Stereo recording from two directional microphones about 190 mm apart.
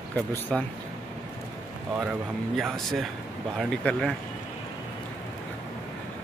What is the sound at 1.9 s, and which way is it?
Speech, 5° right (ahead or behind).